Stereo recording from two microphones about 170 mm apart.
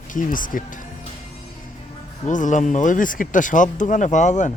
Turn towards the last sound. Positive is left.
turn(degrees=45)  # may be behind; listen again after turning